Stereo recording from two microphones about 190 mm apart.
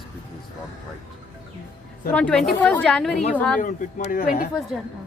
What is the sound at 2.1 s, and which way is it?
Speech, 5° left (ahead or behind).